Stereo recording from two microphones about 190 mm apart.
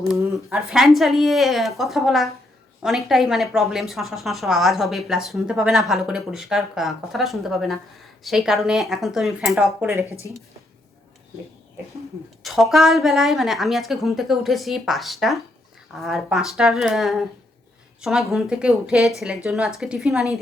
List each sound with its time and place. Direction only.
0.7 s a woman's voice: centre (ahead or behind)
10.2 s a woman's voice: 15° left (ahead or behind)
12.4 s a woman's voice: centre (ahead or behind)